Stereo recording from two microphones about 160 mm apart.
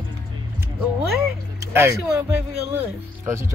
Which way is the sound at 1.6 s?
15° right (ahead or behind).